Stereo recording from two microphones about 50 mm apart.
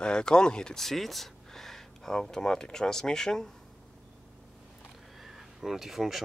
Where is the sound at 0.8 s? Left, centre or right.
Centre.